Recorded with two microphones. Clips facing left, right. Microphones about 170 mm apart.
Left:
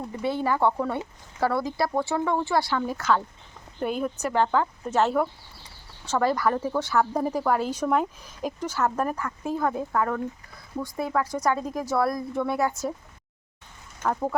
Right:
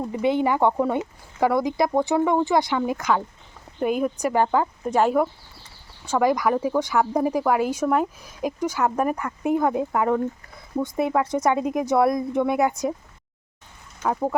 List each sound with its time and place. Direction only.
0.1 s speech: 20° right (ahead or behind)
14.0 s speech: 10° right (ahead or behind)